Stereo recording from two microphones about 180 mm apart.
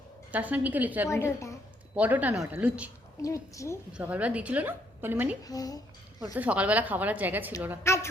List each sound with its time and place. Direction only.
0.3 s a woman's voice: 10° right (ahead or behind)
1.1 s a woman's voice: 15° left (ahead or behind)
2.0 s a woman's voice: 10° right (ahead or behind)
3.2 s a woman's voice: 15° left (ahead or behind)
3.9 s a woman's voice: 5° right (ahead or behind)
5.5 s a woman's voice: 20° left (ahead or behind)
6.2 s a woman's voice: 10° right (ahead or behind)
7.9 s a woman's voice: 15° left (ahead or behind)